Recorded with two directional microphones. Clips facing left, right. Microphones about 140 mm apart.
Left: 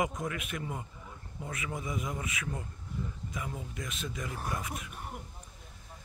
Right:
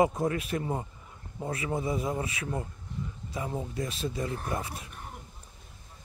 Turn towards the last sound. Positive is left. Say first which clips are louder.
# right 3 dB
turn(degrees=-30)  # may be behind; listen again after turning